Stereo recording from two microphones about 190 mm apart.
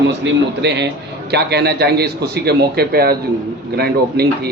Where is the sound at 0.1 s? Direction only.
65° right (ahead or behind).